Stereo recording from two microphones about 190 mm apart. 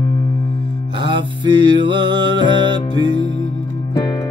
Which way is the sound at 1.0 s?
25° right (ahead or behind).